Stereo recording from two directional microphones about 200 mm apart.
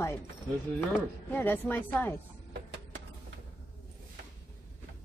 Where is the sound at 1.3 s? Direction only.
10° left (ahead or behind).